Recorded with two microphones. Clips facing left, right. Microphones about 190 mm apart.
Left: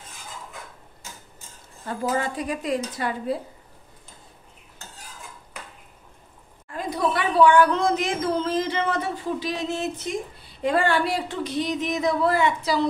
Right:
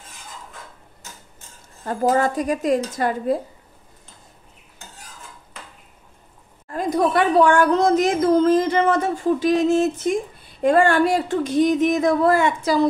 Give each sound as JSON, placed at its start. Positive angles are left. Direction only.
{"t": 1.9, "sound": "a woman's voice", "side_deg": -45}
{"t": 6.7, "sound": "a woman's voice", "side_deg": -45}